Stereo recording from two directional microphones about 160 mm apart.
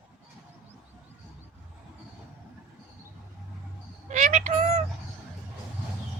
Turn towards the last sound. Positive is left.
turn(degrees=-45)  # may be behind; listen again after turning